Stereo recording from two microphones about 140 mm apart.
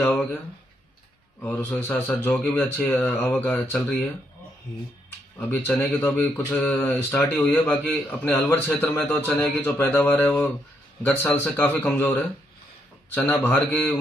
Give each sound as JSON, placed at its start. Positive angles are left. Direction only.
{"t": 0.0, "sound": "a sound", "side_deg": 15}
{"t": 1.4, "sound": "a man's voice", "side_deg": 15}
{"t": 5.4, "sound": "a man's voice", "side_deg": 10}